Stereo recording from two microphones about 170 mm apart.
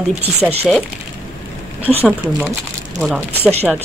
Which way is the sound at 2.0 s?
10° right (ahead or behind).